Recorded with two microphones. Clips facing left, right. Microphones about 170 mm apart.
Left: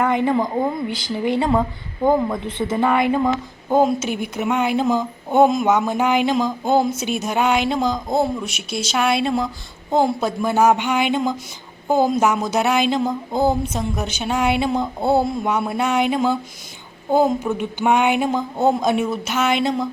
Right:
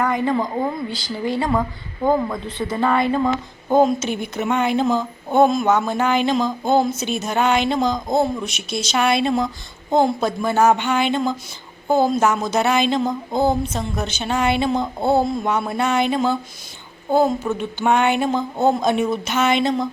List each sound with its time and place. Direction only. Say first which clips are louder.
0.0 s speech: left 2 dB; 20° left (ahead or behind)
2.0 s a woman's voice: left 1 dB; 10° left (ahead or behind)
2.3 s a woman's voice: left 2 dB; 20° left (ahead or behind)